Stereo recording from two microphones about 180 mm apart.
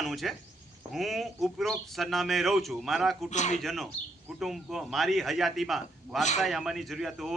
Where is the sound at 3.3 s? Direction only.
40° left (ahead or behind).